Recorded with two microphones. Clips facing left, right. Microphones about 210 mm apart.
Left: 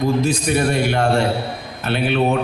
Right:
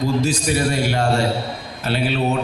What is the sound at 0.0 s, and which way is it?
A man's voice, 55° left (ahead or behind).